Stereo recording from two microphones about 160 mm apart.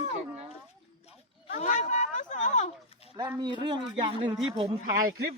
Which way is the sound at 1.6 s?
50° left (ahead or behind).